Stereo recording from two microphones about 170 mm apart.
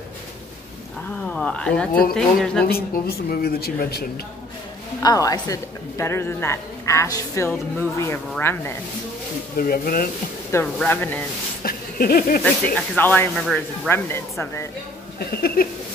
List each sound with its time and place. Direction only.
1.2 s speech: 5° left (ahead or behind)
2.6 s a man's voice: 65° left (ahead or behind)
5.0 s speech: 20° left (ahead or behind)
9.6 s a man's voice: 60° left (ahead or behind)
10.5 s speech: 10° left (ahead or behind)
11.6 s a sound: 60° left (ahead or behind)
12.9 s speech: 10° left (ahead or behind)
13.3 s speech: centre (ahead or behind)
13.8 s speech: 15° left (ahead or behind)
15.1 s speech: 65° left (ahead or behind)